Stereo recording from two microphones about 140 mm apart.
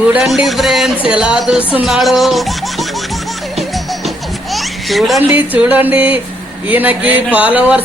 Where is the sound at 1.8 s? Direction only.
Centre (ahead or behind).